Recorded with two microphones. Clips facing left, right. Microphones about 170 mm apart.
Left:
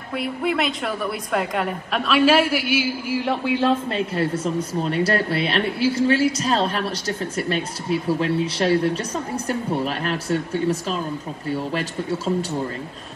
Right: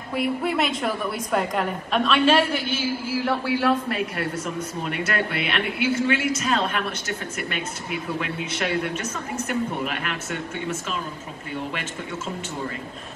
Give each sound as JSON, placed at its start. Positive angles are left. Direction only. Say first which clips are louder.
{"t": 0.1, "sound": "a woman's voice", "louder": "even", "side_deg": 0}